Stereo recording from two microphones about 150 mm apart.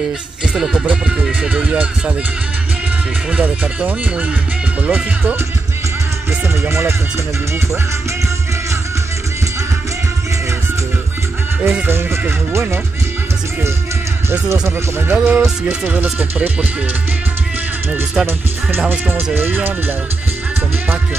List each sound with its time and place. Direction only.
0.6 s music: 5° right (ahead or behind)
3.3 s speech: 10° right (ahead or behind)
6.4 s speech: 15° right (ahead or behind)
11.6 s speech: 15° right (ahead or behind)
14.3 s speech: 15° right (ahead or behind)
17.9 s speech: 15° right (ahead or behind)